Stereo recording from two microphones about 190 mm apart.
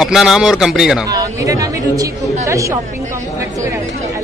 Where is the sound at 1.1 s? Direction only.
20° right (ahead or behind).